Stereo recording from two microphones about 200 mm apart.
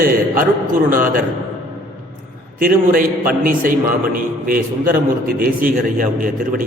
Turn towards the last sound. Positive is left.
turn(degrees=-45)  # may be behind; listen again after turning